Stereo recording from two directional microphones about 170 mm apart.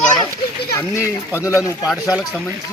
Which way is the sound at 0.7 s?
15° left (ahead or behind).